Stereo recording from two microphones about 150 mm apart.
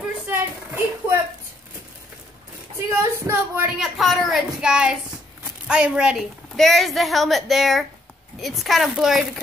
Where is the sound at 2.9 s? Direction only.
15° right (ahead or behind).